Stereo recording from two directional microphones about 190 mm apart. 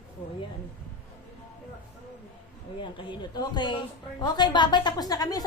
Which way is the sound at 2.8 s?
25° left (ahead or behind).